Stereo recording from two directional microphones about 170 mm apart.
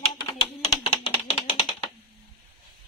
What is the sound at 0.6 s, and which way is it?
Music, 30° left (ahead or behind).